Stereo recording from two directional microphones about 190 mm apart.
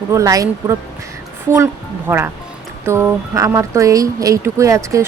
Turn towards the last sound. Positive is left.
turn(degrees=-15)  # may be behind; listen again after turning